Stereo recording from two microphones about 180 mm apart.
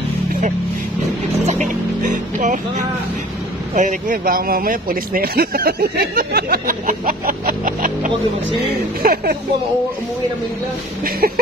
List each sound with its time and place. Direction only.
1.4 s vehicle: 40° right (ahead or behind)
3.7 s speech: 50° right (ahead or behind)